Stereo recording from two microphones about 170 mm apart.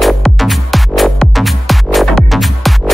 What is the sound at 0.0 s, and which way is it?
Music, centre (ahead or behind).